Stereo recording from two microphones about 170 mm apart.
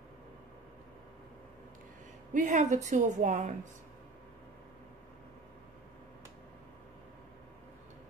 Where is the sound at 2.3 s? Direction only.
45° right (ahead or behind).